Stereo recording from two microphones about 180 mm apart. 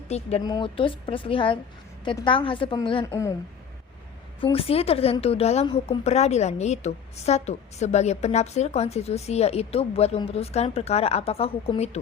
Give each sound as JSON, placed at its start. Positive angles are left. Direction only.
{"t": 0.1, "sound": "a woman's voice", "side_deg": 35}
{"t": 4.4, "sound": "a woman's voice", "side_deg": 30}